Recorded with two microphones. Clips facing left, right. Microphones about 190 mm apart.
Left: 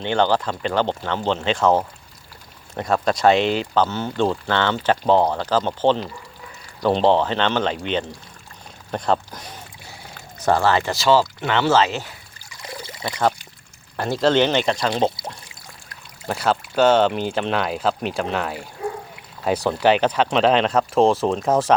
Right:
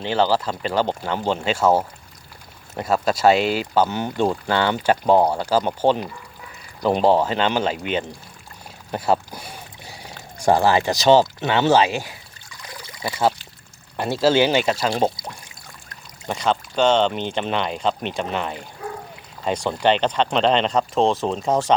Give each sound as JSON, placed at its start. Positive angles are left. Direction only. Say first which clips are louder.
{"t": 0.0, "sound": "speech", "louder": "even", "side_deg": -5}
{"t": 8.9, "sound": "boat", "louder": "right 1 dB", "side_deg": -10}
{"t": 10.4, "sound": "speech", "louder": "right 2 dB", "side_deg": -15}
{"t": 12.6, "sound": "pour", "louder": "left 5 dB", "side_deg": 25}
{"t": 13.1, "sound": "speech", "louder": "right 1 dB", "side_deg": -5}
{"t": 16.2, "sound": "speech", "louder": "left 1 dB", "side_deg": 5}
{"t": 18.8, "sound": "dog", "louder": "left 5 dB", "side_deg": 25}
{"t": 19.5, "sound": "speech", "louder": "left 2 dB", "side_deg": 5}